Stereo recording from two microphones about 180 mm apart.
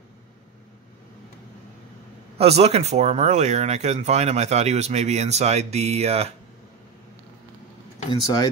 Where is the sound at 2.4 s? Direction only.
35° right (ahead or behind).